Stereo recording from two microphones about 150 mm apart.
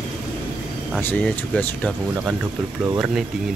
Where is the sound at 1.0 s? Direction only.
10° left (ahead or behind).